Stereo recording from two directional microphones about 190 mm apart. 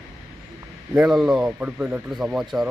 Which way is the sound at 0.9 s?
5° right (ahead or behind).